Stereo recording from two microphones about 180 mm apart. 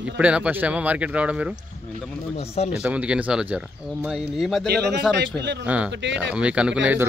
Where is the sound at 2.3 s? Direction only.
35° left (ahead or behind).